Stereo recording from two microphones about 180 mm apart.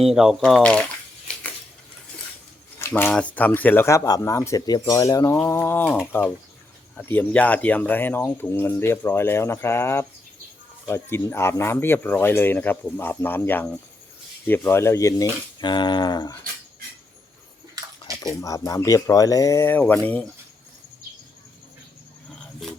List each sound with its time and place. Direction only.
0.0 s speech: centre (ahead or behind)
2.7 s speech: 15° left (ahead or behind)
18.0 s speech: 25° left (ahead or behind)
22.6 s a sound: centre (ahead or behind)